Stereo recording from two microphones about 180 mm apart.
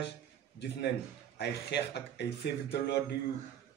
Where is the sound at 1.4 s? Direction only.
70° left (ahead or behind).